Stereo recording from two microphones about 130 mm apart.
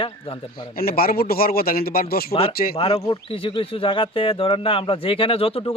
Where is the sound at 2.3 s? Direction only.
45° left (ahead or behind).